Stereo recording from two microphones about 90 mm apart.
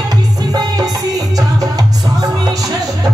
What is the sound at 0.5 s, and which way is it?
Music, 45° right (ahead or behind).